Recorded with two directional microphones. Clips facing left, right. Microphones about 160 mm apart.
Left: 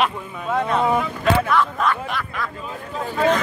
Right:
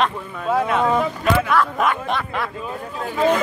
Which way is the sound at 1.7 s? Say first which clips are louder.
Right 2 dB; 20° right (ahead or behind).